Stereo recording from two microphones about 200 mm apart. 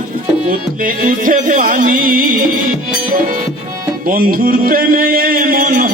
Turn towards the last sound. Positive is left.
turn(degrees=-45)  # may be behind; listen again after turning